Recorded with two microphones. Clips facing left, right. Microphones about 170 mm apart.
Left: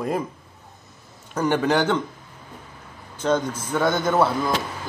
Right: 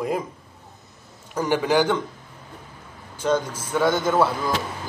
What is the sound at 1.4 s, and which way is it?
Speech, 10° right (ahead or behind).